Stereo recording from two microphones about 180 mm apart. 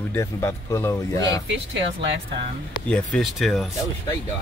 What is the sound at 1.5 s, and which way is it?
Speech, 80° right.